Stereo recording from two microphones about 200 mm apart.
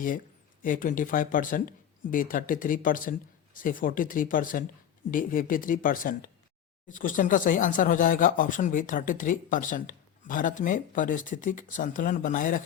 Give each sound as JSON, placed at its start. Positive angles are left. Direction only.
{"t": 0.6, "sound": "speech", "side_deg": 45}